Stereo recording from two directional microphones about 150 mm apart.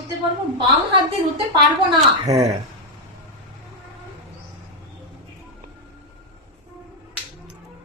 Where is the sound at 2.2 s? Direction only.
45° right (ahead or behind).